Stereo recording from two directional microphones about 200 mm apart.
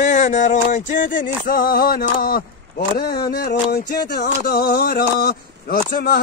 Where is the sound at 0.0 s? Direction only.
35° left (ahead or behind).